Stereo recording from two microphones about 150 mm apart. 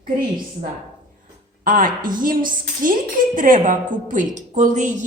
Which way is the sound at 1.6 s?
65° right (ahead or behind).